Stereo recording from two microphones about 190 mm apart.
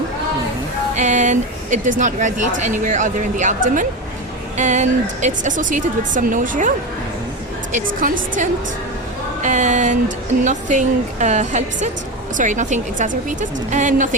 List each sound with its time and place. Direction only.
0.9 s a woman's voice: 40° right (ahead or behind)